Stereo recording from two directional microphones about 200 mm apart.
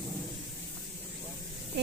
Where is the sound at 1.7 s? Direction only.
55° right (ahead or behind).